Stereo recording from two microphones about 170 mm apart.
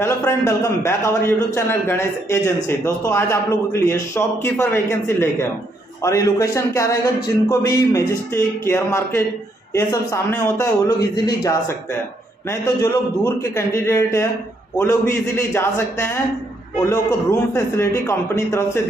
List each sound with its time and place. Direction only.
0.0 s a man's voice: 15° left (ahead or behind)
12.6 s a man's voice: 15° left (ahead or behind)